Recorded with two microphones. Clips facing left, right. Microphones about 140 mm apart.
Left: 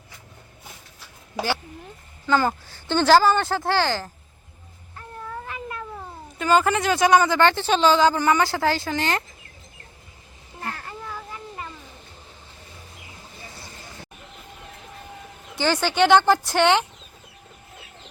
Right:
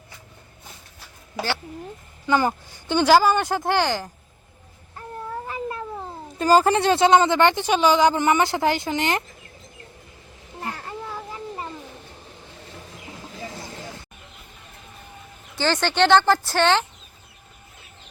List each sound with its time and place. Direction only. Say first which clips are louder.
2.2 s speech: even; 15° right (ahead or behind)
5.5 s speech: right 4 dB; 30° right (ahead or behind)
10.8 s a sound: right 3 dB; 25° right (ahead or behind)
13.3 s clip-clop: right 9 dB; 90° right
15.5 s speech: even; 10° left (ahead or behind)